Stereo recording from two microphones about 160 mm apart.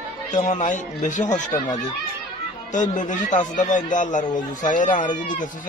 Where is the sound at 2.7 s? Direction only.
50° left (ahead or behind).